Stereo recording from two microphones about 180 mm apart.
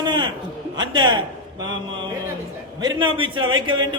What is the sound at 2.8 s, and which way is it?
A man's voice, 25° right (ahead or behind).